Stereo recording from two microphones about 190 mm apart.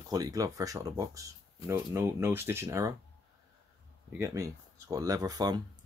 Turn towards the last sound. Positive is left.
turn(degrees=-20)  # may be behind; listen again after turning